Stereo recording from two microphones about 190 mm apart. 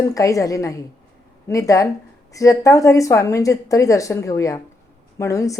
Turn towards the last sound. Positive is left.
turn(degrees=15)  # may be behind; listen again after turning